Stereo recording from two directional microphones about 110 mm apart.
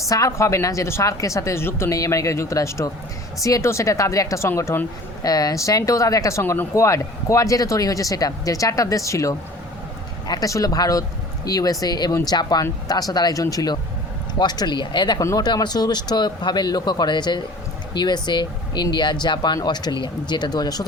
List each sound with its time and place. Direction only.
0.1 s speech: 30° left (ahead or behind)
5.2 s speech: 35° left (ahead or behind)
15.2 s speech: 35° left (ahead or behind)